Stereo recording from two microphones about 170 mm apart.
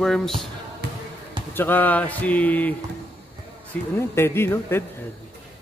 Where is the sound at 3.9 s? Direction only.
15° left (ahead or behind).